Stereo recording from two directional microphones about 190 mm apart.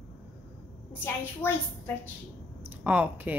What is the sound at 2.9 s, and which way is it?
Speech, 10° right (ahead or behind).